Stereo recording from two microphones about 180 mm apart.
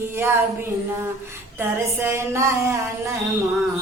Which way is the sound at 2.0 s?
15° right (ahead or behind).